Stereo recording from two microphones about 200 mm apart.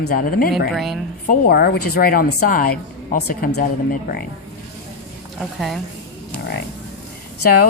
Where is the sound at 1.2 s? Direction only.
40° left (ahead or behind).